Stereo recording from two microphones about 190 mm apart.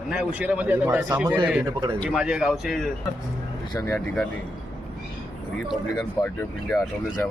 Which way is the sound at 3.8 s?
20° left (ahead or behind).